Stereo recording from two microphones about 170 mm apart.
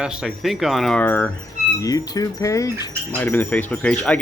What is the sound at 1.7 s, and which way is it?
Speech, 20° left (ahead or behind).